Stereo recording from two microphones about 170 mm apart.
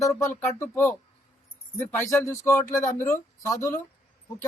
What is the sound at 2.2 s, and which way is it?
Speech, 15° left (ahead or behind).